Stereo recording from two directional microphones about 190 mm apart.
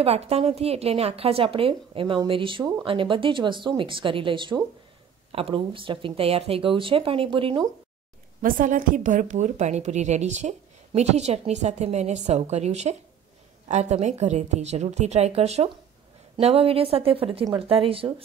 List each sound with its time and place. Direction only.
0.0 s a woman's voice: 30° right (ahead or behind)
8.4 s a woman's voice: 45° right (ahead or behind); by 18.1 s 30° right (ahead or behind)